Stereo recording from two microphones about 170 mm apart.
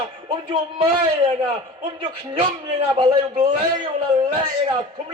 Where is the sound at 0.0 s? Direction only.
30° right (ahead or behind).